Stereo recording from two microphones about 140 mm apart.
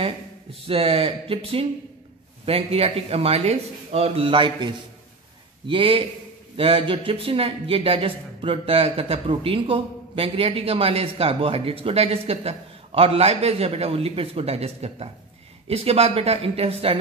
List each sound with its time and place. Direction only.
0.7 s a man's voice: 45° right (ahead or behind)